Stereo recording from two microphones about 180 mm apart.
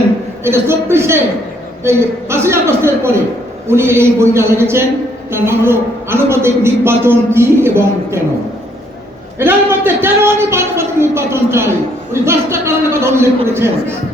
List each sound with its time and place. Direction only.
0.4 s a man's voice: 15° right (ahead or behind)
9.4 s a man's voice: 10° right (ahead or behind)